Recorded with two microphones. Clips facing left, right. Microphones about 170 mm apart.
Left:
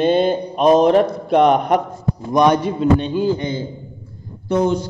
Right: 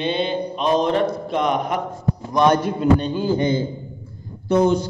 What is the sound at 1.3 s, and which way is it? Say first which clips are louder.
Speech: left 11 dB; 60° left (ahead or behind).